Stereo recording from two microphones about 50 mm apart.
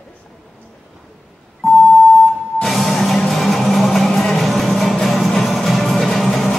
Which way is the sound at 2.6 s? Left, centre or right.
Centre.